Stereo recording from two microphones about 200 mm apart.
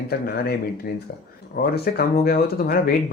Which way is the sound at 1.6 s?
50° left (ahead or behind).